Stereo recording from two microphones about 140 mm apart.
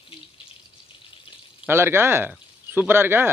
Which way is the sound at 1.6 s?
15° right (ahead or behind).